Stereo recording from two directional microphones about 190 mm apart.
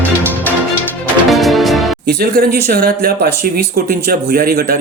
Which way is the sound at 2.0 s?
55° right (ahead or behind).